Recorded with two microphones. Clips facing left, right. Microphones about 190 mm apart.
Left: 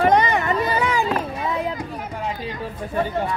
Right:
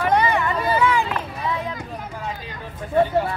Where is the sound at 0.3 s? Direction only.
45° left (ahead or behind).